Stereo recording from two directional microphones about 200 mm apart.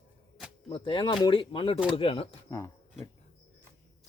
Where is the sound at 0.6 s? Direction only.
25° left (ahead or behind).